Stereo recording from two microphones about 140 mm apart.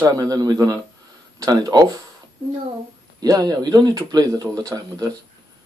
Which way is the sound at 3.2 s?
25° right (ahead or behind).